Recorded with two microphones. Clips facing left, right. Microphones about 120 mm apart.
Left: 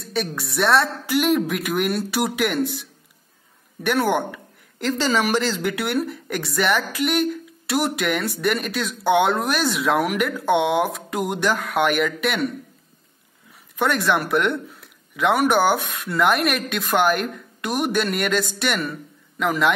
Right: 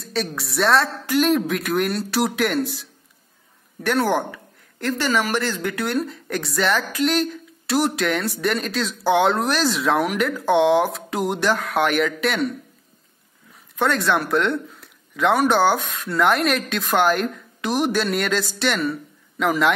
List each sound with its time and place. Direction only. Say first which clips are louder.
0.0 s a woman's voice: even; centre (ahead or behind)
3.8 s a woman's voice: even; centre (ahead or behind)
4.8 s a woman's voice: left 1 dB; 15° left (ahead or behind)
13.7 s a woman's voice: even; centre (ahead or behind)